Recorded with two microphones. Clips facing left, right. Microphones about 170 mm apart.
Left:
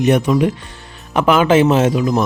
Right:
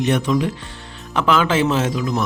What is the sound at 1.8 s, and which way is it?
Speech, 55° left (ahead or behind).